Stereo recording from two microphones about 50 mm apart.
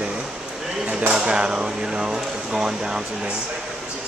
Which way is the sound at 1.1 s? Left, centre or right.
Centre.